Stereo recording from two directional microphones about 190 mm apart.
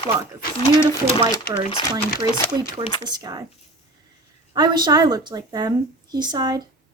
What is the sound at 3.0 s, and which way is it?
Speech, 20° right (ahead or behind).